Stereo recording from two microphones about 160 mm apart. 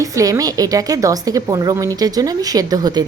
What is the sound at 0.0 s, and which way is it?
A woman's voice, 20° right (ahead or behind).